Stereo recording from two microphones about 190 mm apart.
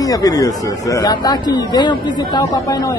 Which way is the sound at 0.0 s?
20° left (ahead or behind).